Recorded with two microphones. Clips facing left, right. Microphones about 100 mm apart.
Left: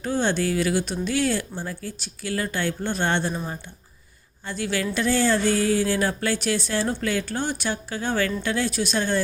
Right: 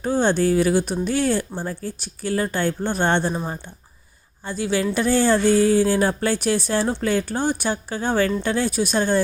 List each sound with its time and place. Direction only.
0.0 s speech: 45° right (ahead or behind)
3.2 s speech: 35° right (ahead or behind)
4.6 s a sound: 25° right (ahead or behind)
5.6 s a sound: 30° right (ahead or behind)
6.8 s speech: 30° right (ahead or behind)
8.1 s speech: 30° right (ahead or behind)
8.6 s speech: 45° right (ahead or behind)